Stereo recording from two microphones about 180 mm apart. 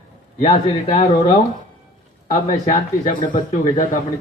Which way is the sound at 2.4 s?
45° left (ahead or behind).